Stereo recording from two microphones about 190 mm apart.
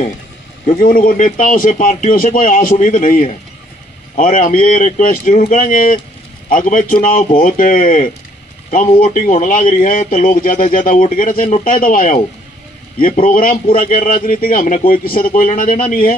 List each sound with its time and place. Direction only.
0.7 s speech: 45° left (ahead or behind)
13.3 s speech: 50° left (ahead or behind)